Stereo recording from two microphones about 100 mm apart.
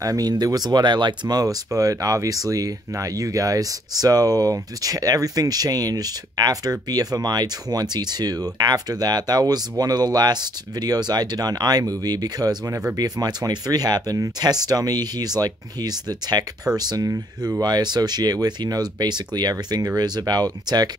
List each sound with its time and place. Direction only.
0.0 s speech: 40° right (ahead or behind)